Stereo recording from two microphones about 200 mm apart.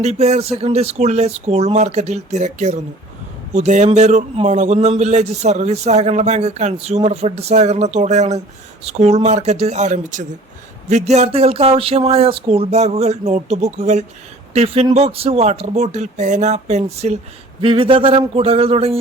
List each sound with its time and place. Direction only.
0.0 s a man's voice: 35° right (ahead or behind)